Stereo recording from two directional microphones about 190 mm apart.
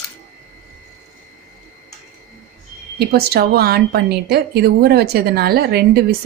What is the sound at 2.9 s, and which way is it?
A woman's voice, 55° right (ahead or behind).